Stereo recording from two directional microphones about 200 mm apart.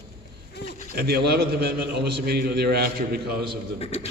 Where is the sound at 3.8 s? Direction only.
30° left (ahead or behind).